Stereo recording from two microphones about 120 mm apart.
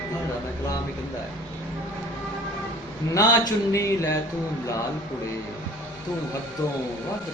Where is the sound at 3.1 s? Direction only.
25° left (ahead or behind).